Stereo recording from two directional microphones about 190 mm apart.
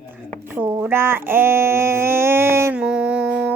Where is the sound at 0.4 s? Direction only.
10° right (ahead or behind).